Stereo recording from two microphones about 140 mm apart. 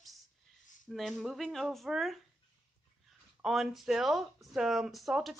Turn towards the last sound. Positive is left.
turn(degrees=0)  # may be behind; listen again after turning